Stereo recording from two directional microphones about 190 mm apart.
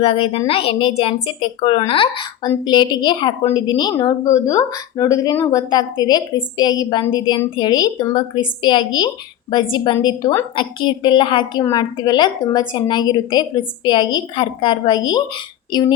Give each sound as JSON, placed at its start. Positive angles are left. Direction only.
{"t": 0.0, "sound": "a woman's voice", "side_deg": 30}